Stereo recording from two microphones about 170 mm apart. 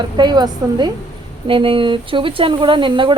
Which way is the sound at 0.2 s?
25° right (ahead or behind).